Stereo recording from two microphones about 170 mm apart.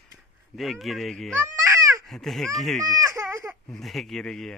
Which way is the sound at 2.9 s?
20° right (ahead or behind).